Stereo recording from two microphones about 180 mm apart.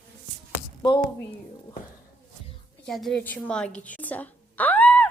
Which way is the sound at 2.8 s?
Centre (ahead or behind).